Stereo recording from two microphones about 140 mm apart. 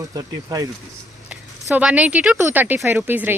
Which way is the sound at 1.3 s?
10° right (ahead or behind).